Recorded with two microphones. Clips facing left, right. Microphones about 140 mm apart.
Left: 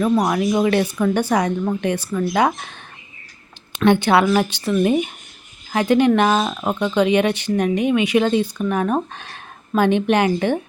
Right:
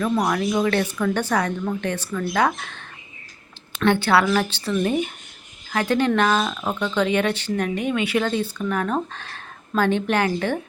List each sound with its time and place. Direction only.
0.0 s speech: 20° left (ahead or behind)